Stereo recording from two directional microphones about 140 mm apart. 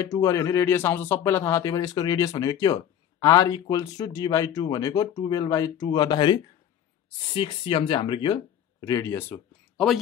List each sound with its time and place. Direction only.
0.0 s speech: 25° left (ahead or behind)
8.8 s speech: 25° left (ahead or behind)